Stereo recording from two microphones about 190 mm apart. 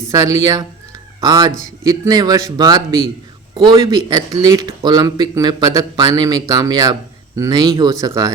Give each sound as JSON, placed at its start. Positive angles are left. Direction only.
{"t": 0.1, "sound": "speech", "side_deg": -20}